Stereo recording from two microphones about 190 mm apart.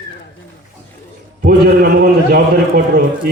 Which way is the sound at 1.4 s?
55° right (ahead or behind).